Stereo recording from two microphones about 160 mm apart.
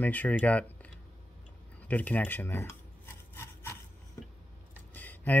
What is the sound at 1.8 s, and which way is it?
Rub, 10° left (ahead or behind).